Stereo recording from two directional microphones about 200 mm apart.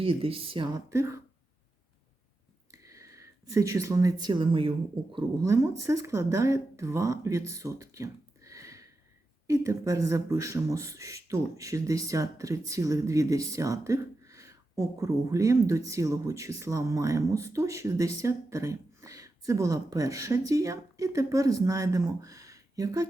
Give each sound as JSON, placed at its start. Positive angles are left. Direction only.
{"t": 0.0, "sound": "speech", "side_deg": -30}
{"t": 2.7, "sound": "speech", "side_deg": -15}